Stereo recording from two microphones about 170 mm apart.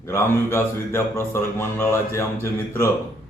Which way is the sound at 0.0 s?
15° left (ahead or behind).